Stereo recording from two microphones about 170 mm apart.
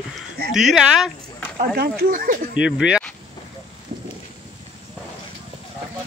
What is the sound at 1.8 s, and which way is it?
Speech, 60° right (ahead or behind).